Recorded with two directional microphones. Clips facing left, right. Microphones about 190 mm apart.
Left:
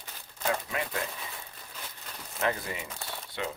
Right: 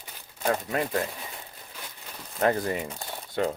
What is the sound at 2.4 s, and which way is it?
Speech, 45° right (ahead or behind).